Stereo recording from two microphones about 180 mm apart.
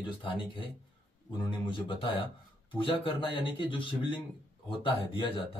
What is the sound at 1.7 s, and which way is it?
Speech, 30° left (ahead or behind).